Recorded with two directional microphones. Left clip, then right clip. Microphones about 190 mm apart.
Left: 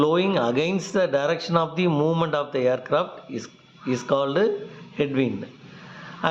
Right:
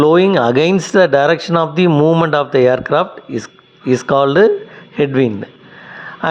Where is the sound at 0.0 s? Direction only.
45° right (ahead or behind).